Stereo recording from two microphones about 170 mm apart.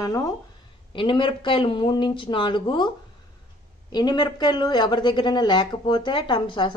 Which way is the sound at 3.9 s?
25° left (ahead or behind).